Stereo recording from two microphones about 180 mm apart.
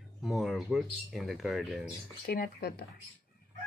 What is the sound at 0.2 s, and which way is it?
Speech, centre (ahead or behind).